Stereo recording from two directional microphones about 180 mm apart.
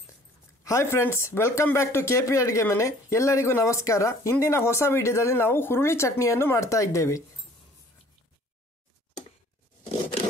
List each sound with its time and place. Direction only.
0.7 s speech: 15° left (ahead or behind)